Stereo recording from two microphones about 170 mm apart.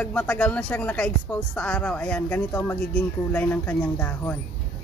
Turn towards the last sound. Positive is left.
turn(degrees=10)  # may be behind; listen again after turning